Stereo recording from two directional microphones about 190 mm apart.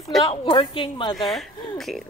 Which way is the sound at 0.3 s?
30° left (ahead or behind).